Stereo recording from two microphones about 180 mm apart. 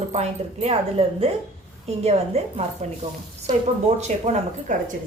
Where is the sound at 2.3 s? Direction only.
35° right (ahead or behind).